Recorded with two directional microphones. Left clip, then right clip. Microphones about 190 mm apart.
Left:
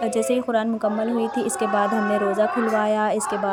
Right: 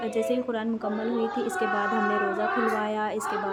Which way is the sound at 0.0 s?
35° left (ahead or behind).